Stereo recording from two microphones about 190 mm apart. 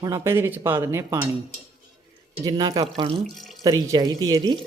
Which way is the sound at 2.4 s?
20° right (ahead or behind).